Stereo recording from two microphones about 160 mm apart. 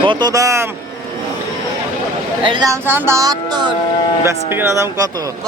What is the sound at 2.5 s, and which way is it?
Speech, 25° right (ahead or behind).